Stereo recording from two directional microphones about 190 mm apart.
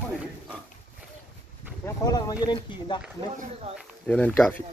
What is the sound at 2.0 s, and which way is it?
Speech, 20° left (ahead or behind).